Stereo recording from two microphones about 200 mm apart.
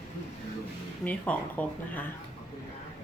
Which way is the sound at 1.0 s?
10° left (ahead or behind).